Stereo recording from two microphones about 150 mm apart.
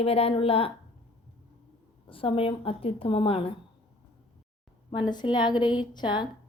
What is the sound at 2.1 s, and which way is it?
A woman's voice, 35° left (ahead or behind).